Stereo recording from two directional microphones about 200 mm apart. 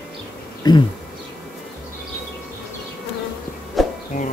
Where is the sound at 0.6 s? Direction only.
20° left (ahead or behind).